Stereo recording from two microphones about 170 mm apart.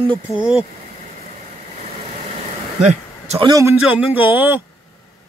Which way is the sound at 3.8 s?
5° right (ahead or behind).